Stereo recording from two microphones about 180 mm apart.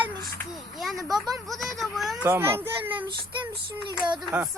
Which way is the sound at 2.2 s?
15° right (ahead or behind).